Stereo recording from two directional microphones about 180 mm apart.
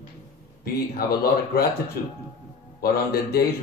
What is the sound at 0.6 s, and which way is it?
A man's voice, 60° left (ahead or behind).